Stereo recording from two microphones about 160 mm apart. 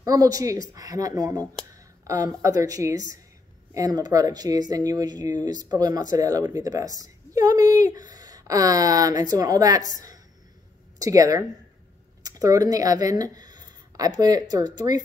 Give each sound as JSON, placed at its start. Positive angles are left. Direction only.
{"t": 0.0, "sound": "speech", "side_deg": -20}
{"t": 11.0, "sound": "speech", "side_deg": -20}